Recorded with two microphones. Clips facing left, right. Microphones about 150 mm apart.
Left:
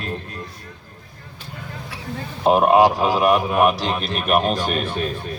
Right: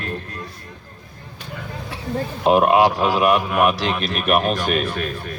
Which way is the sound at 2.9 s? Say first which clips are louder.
Even; 15° left (ahead or behind).